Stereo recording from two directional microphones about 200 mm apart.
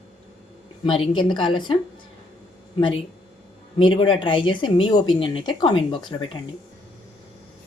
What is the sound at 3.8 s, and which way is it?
Speech, 25° left (ahead or behind).